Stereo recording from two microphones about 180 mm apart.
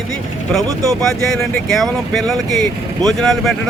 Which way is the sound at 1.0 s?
Centre (ahead or behind).